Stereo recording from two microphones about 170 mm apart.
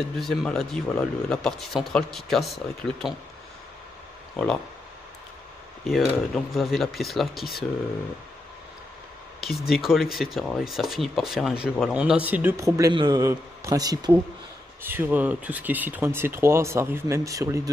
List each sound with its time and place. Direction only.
0.2 s speech: centre (ahead or behind)
4.4 s speech: centre (ahead or behind)
5.9 s speech: centre (ahead or behind)
9.7 s speech: centre (ahead or behind); by 14.2 s 25° right (ahead or behind)
14.8 s speech: 10° right (ahead or behind)